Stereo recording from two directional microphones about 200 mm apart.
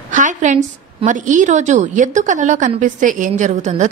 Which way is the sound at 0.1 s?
40° right (ahead or behind).